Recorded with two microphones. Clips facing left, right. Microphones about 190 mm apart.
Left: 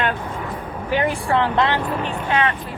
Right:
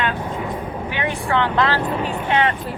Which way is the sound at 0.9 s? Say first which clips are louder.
Left 3 dB; 35° left (ahead or behind).